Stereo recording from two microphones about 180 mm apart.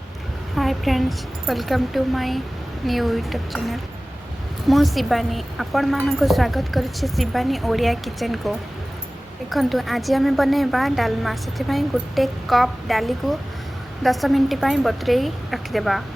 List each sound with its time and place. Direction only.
0.5 s a woman's voice: centre (ahead or behind)